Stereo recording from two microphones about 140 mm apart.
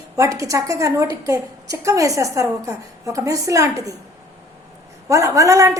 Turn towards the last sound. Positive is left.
turn(degrees=-25)  # may be behind; listen again after turning